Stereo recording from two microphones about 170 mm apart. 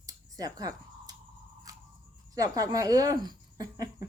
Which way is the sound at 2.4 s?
20° right (ahead or behind).